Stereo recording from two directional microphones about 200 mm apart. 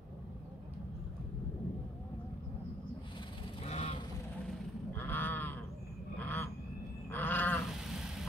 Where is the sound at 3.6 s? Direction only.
30° left (ahead or behind).